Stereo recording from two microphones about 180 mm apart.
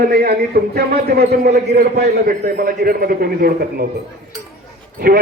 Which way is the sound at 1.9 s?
60° right (ahead or behind).